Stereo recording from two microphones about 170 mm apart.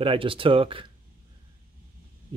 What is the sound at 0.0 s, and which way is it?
Speech, 30° right (ahead or behind).